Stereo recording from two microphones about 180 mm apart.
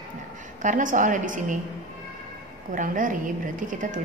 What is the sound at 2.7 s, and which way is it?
Speech, 45° right (ahead or behind).